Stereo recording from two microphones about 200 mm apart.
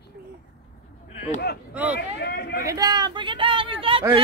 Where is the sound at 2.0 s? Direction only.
55° left (ahead or behind).